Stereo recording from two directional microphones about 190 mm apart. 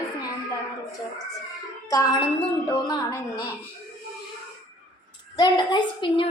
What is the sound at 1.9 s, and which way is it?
A woman's voice, 20° left (ahead or behind).